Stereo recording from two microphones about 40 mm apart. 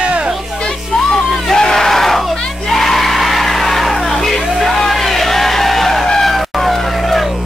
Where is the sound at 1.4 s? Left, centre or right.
Centre.